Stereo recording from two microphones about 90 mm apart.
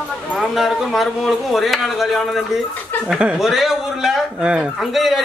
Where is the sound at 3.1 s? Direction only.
10° right (ahead or behind).